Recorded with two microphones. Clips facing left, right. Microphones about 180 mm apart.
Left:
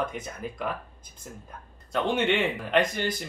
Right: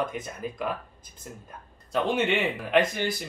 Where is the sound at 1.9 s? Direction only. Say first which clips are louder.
Even; centre (ahead or behind).